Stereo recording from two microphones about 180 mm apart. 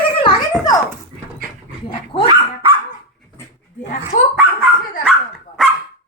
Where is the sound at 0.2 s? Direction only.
30° left (ahead or behind).